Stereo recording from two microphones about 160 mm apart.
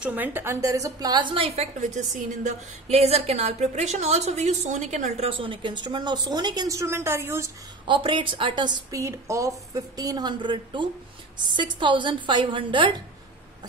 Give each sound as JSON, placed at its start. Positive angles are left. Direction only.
{"t": 0.0, "sound": "a woman's voice", "side_deg": -10}
{"t": 1.8, "sound": "a woman's voice", "side_deg": -50}
{"t": 7.8, "sound": "a woman's voice", "side_deg": -30}